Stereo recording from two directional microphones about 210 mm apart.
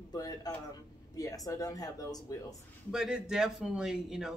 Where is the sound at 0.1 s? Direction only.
20° left (ahead or behind).